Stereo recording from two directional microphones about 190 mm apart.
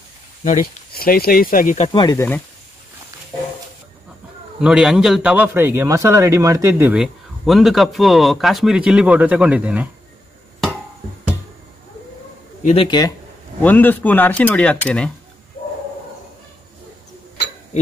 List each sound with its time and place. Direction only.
0.4 s speech: 45° left (ahead or behind)
1.9 s a man's voice: 20° left (ahead or behind)
4.6 s a man's voice: 5° right (ahead or behind)
12.6 s a man's voice: 25° left (ahead or behind)
13.6 s speech: 10° left (ahead or behind)